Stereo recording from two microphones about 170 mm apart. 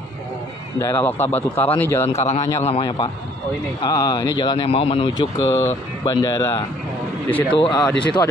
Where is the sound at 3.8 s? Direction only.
20° left (ahead or behind).